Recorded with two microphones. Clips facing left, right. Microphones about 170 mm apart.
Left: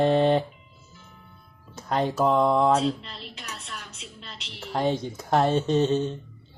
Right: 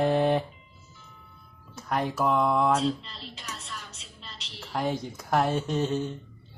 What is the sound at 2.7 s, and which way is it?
Speech, 65° left (ahead or behind).